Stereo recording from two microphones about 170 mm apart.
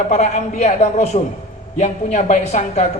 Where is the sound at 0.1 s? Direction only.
40° left (ahead or behind).